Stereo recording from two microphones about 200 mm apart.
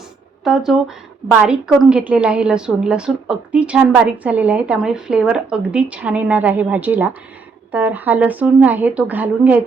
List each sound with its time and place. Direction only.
0.4 s a woman's voice: centre (ahead or behind)